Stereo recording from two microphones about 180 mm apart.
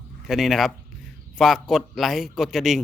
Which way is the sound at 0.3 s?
Centre (ahead or behind).